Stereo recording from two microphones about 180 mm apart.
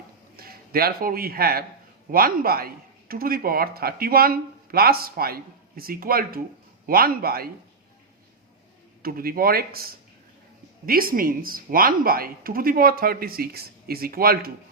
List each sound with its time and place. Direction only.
0.3 s speech: 55° right (ahead or behind)
9.0 s speech: 55° right (ahead or behind)